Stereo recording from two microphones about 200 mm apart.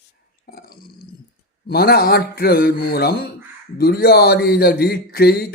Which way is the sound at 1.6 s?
50° left (ahead or behind).